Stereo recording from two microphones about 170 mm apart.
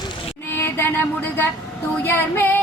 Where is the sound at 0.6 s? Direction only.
15° left (ahead or behind).